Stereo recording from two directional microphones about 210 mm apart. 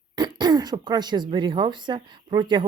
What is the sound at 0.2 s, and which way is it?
Speech, 20° right (ahead or behind).